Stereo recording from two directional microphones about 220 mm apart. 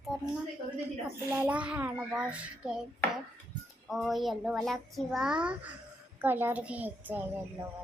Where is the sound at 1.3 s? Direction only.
5° right (ahead or behind).